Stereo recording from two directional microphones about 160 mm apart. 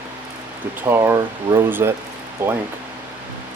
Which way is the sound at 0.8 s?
15° right (ahead or behind).